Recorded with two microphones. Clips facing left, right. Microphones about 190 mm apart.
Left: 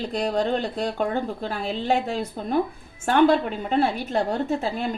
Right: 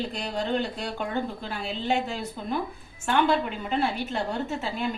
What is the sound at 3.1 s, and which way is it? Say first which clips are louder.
Speech: left 5 dB; 40° left (ahead or behind).